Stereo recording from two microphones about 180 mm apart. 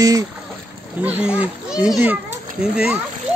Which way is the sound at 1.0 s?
10° right (ahead or behind).